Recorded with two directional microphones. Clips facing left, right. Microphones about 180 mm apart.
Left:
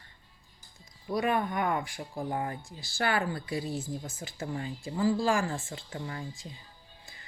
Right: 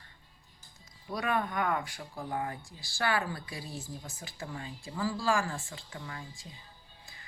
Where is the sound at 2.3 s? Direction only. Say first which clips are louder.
Left 2 dB; 30° left (ahead or behind).